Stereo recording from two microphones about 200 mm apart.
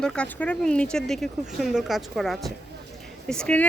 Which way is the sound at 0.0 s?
5° left (ahead or behind).